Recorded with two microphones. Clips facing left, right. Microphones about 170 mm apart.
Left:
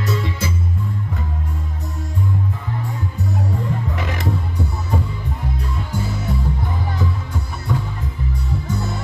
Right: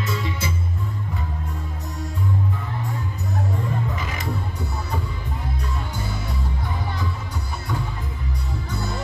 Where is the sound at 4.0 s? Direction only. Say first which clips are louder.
Left 5 dB; 65° left (ahead or behind).